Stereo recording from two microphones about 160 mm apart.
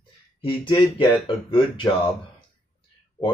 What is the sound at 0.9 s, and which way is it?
Speech, 35° left (ahead or behind).